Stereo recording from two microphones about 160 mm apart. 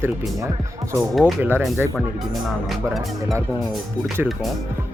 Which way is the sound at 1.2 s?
10° right (ahead or behind).